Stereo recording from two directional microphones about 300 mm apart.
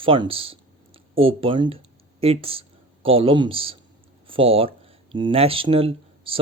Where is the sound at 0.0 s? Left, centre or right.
Centre.